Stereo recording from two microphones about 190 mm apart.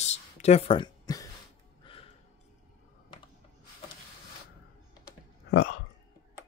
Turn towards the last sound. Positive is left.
turn(degrees=60)  # may be behind; listen again after turning